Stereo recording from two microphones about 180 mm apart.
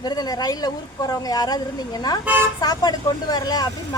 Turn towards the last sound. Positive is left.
turn(degrees=20)  # may be behind; listen again after turning